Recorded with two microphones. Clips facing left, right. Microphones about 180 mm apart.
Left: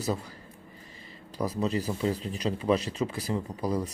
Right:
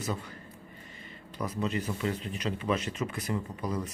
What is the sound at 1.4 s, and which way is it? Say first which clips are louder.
Speech: left 3 dB; 35° left (ahead or behind).